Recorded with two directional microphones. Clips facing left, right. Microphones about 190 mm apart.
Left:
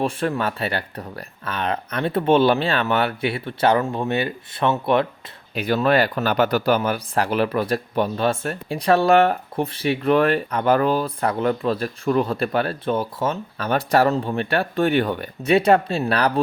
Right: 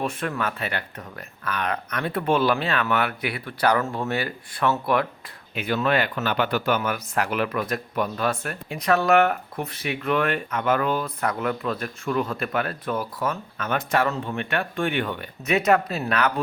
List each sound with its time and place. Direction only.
0.0 s speech: 30° left (ahead or behind)
5.5 s speech: 35° left (ahead or behind)